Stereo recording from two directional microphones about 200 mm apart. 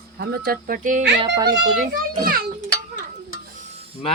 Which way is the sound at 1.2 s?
20° right (ahead or behind).